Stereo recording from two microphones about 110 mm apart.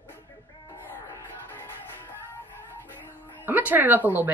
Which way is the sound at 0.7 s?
25° left (ahead or behind).